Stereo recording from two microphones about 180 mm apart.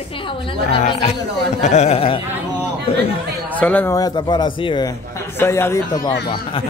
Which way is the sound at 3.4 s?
10° left (ahead or behind).